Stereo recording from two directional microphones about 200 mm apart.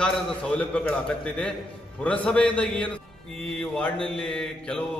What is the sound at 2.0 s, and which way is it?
A man's voice, 5° left (ahead or behind).